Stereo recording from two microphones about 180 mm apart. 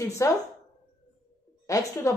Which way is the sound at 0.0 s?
15° left (ahead or behind).